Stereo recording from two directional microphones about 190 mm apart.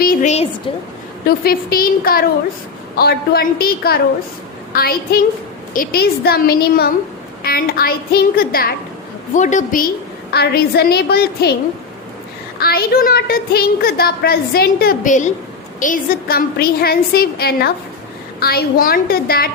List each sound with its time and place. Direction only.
0.0 s a woman's voice: 45° left (ahead or behind)
1.5 s a woman's voice: 50° left (ahead or behind)
9.3 s a woman's voice: 40° left (ahead or behind)
10.3 s a woman's voice: 55° left (ahead or behind)
12.5 s a woman's voice: 55° left (ahead or behind)